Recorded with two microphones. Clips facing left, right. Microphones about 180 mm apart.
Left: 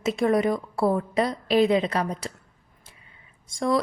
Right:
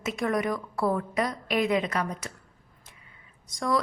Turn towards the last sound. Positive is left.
turn(degrees=25)  # may be behind; listen again after turning